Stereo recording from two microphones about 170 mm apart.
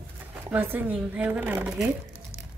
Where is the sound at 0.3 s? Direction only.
10° right (ahead or behind).